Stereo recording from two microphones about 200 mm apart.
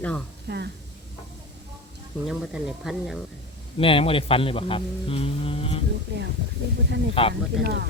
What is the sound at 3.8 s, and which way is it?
Speech, 25° left (ahead or behind).